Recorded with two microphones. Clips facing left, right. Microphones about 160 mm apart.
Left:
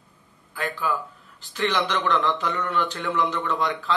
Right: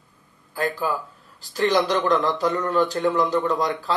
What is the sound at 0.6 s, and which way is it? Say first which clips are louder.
Speech: right 3 dB; 35° right (ahead or behind).